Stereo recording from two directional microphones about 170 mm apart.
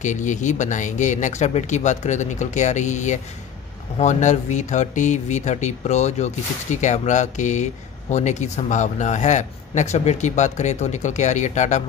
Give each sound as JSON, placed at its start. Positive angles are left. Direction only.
{"t": 0.0, "sound": "speech", "side_deg": 45}